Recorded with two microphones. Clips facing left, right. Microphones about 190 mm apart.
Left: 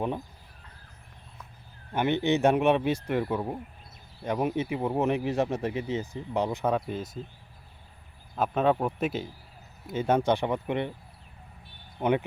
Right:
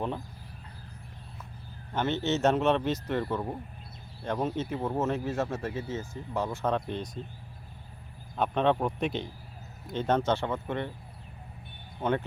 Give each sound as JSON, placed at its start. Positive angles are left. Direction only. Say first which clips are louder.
{"t": 1.9, "sound": "speech", "louder": "left 3 dB", "side_deg": 15}
{"t": 6.7, "sound": "speech", "louder": "left 1 dB", "side_deg": 5}
{"t": 8.4, "sound": "speech", "louder": "left 1 dB", "side_deg": 5}
{"t": 11.9, "sound": "speech", "louder": "left 3 dB", "side_deg": 15}